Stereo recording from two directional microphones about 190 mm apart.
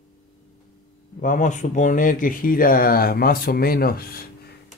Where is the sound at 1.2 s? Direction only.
40° left (ahead or behind).